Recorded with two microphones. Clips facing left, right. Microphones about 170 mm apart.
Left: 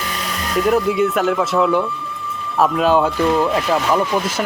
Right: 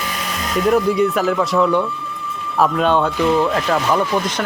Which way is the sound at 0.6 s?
Centre (ahead or behind).